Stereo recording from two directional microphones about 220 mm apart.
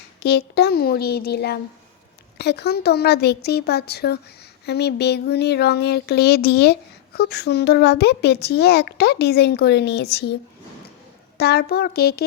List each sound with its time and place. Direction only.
0.2 s speech: 50° left (ahead or behind)
11.3 s speech: 45° left (ahead or behind)